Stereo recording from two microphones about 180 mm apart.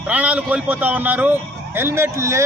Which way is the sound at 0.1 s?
5° right (ahead or behind).